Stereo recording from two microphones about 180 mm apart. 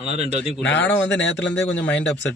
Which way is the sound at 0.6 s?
75° left (ahead or behind).